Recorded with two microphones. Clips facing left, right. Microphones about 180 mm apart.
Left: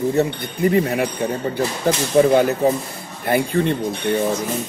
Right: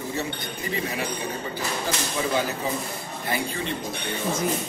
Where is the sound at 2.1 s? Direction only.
60° left (ahead or behind).